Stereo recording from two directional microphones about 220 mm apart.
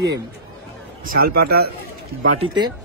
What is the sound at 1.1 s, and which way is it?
Speech, 45° right (ahead or behind).